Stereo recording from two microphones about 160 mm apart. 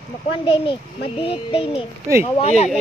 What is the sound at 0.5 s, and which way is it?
A child's voice, 35° left (ahead or behind).